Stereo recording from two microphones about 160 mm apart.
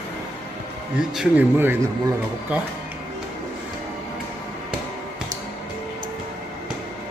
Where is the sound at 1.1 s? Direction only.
5° right (ahead or behind).